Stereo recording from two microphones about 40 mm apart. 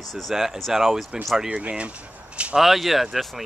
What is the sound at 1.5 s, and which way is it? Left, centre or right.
Speech, right.